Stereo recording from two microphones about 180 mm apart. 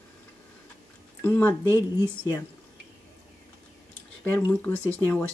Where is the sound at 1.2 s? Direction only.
10° left (ahead or behind).